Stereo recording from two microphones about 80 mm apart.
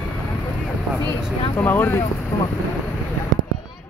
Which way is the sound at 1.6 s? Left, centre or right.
Left.